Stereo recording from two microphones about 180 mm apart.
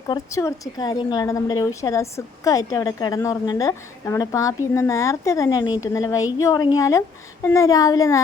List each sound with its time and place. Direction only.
0.1 s a woman's voice: 15° left (ahead or behind)